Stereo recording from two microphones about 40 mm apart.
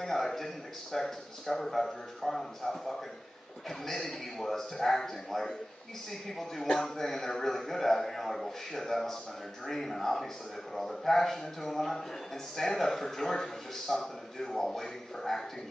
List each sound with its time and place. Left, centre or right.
0.0 s a man's voice: centre